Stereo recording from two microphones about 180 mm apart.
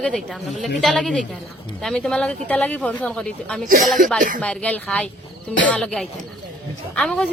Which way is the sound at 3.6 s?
50° right (ahead or behind).